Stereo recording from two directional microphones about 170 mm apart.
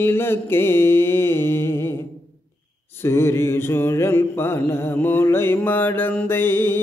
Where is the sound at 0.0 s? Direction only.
15° left (ahead or behind).